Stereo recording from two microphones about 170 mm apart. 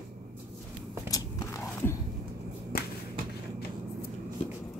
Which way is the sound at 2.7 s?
65° left (ahead or behind).